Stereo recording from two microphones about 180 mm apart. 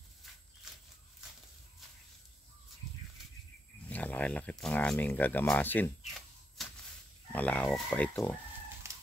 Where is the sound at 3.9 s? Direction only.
10° left (ahead or behind).